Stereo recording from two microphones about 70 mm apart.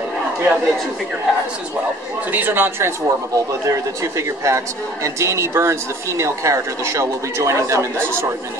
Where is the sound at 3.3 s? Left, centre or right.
Right.